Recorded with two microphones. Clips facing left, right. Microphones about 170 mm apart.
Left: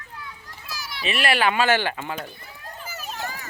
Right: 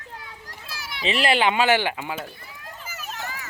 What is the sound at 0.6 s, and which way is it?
Speech, 25° right (ahead or behind).